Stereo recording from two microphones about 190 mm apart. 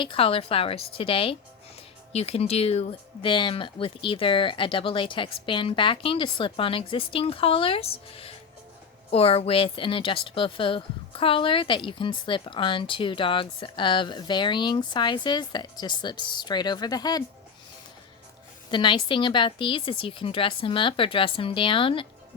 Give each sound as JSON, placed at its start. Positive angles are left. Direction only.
{"t": 0.0, "sound": "speech", "side_deg": 30}
{"t": 18.7, "sound": "speech", "side_deg": 25}